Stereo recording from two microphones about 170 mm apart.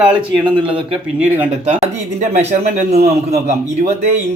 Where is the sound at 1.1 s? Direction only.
10° right (ahead or behind).